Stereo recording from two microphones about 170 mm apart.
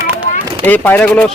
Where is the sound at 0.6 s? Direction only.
10° left (ahead or behind).